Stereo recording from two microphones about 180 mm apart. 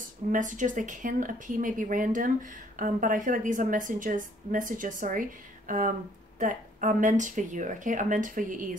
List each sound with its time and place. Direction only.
0.3 s a woman's voice: 45° right (ahead or behind)